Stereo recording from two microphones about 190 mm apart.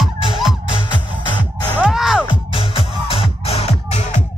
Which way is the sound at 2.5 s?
30° left (ahead or behind).